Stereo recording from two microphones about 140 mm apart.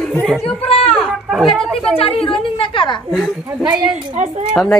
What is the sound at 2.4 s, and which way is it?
Speech, 40° left (ahead or behind).